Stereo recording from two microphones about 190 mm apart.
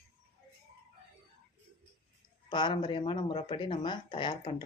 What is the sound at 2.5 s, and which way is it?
Speech, 25° left (ahead or behind).